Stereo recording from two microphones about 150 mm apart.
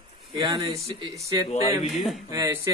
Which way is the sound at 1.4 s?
45° left (ahead or behind).